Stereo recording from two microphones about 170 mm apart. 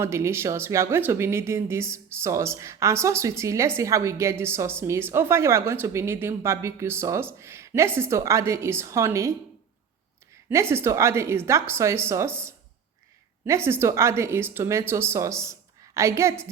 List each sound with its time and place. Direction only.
0.0 s a woman's voice: 15° right (ahead or behind)
10.5 s a woman's voice: 15° right (ahead or behind)